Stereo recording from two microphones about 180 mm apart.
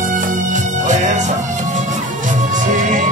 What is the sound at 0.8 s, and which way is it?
Music, 45° right (ahead or behind).